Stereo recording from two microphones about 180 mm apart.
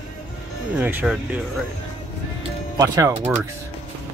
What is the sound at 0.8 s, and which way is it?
Speech, 10° right (ahead or behind).